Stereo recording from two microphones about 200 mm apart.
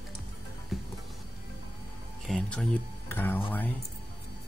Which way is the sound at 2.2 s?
5° left (ahead or behind).